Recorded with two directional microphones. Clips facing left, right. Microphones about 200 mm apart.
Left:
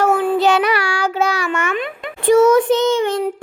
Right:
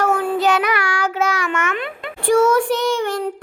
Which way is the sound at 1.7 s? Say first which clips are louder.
Left 3 dB; 15° left (ahead or behind).